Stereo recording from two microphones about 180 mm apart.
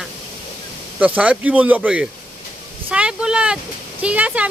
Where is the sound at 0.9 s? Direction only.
10° right (ahead or behind).